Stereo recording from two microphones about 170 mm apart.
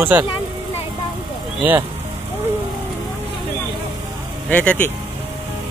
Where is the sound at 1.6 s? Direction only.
10° right (ahead or behind).